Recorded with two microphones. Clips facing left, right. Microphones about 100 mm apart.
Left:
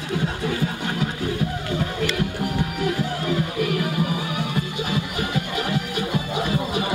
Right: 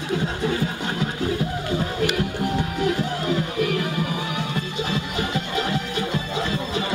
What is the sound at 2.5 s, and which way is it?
Music, 25° right (ahead or behind).